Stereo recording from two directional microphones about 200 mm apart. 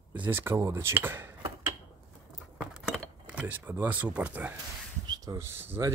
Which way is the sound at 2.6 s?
5° right (ahead or behind).